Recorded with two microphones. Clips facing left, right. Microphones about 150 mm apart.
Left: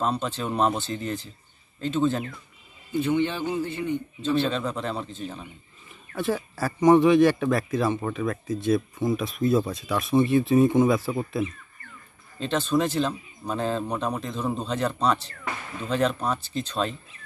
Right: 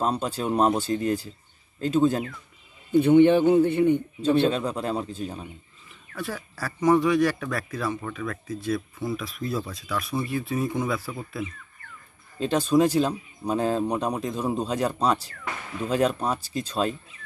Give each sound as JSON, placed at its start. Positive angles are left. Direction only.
{"t": 0.0, "sound": "speech", "side_deg": -10}
{"t": 2.9, "sound": "a man's voice", "side_deg": -55}
{"t": 4.5, "sound": "speech", "side_deg": -10}
{"t": 6.1, "sound": "speech", "side_deg": 25}
{"t": 12.4, "sound": "speech", "side_deg": -10}